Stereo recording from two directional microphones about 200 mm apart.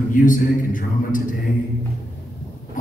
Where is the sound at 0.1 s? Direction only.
40° left (ahead or behind).